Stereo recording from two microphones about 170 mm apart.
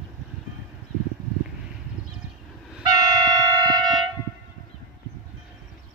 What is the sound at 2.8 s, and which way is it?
Train, 20° right (ahead or behind).